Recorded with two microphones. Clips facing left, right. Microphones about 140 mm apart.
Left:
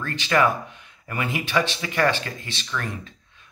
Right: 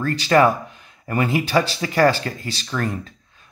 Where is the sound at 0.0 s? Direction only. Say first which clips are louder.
Right 5 dB; 40° right (ahead or behind).